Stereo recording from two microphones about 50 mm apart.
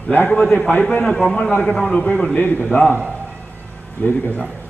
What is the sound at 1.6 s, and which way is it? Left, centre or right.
Speech, centre.